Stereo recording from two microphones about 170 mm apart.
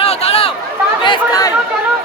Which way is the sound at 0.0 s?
35° left (ahead or behind).